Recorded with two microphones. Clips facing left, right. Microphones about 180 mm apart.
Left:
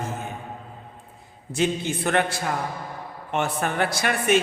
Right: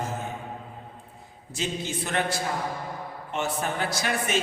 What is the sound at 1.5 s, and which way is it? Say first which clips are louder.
Speech: left 6 dB; 60° left (ahead or behind).